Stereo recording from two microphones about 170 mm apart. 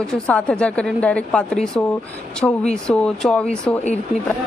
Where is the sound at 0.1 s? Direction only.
5° left (ahead or behind).